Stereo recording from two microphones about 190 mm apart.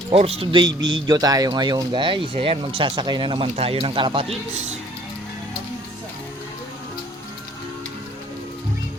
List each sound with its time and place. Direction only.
0.1 s speech: 30° right (ahead or behind)